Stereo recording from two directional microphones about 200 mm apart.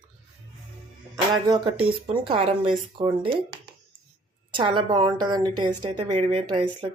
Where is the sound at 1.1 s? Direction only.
20° right (ahead or behind).